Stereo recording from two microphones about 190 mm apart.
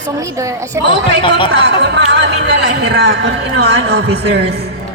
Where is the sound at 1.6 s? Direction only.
65° right (ahead or behind).